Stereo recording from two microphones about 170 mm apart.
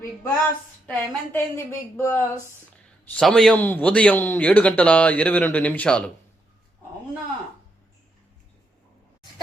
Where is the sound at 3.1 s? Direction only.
5° left (ahead or behind).